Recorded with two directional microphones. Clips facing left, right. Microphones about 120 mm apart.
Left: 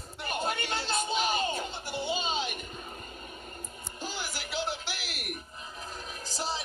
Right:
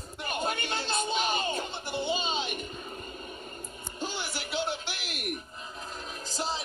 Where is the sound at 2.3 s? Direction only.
20° right (ahead or behind).